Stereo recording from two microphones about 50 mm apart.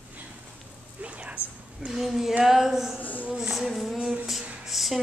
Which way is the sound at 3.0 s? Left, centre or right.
Left.